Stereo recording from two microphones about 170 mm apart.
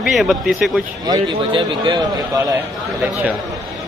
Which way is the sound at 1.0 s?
25° right (ahead or behind).